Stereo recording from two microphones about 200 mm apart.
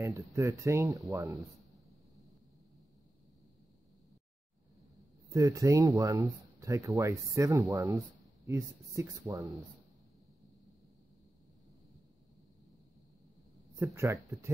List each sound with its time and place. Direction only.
0.0 s speech: 15° right (ahead or behind)
5.3 s speech: 15° right (ahead or behind)
13.9 s speech: 15° right (ahead or behind)